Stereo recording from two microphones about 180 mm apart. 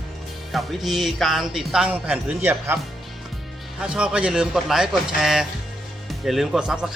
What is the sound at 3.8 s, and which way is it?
A man's voice, 5° right (ahead or behind).